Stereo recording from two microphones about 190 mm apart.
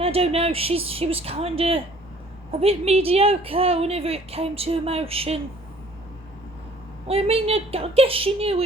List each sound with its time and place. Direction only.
0.0 s a woman's voice: 30° right (ahead or behind)
7.1 s a woman's voice: 30° right (ahead or behind)